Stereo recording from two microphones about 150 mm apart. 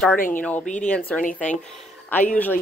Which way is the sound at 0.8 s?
10° left (ahead or behind).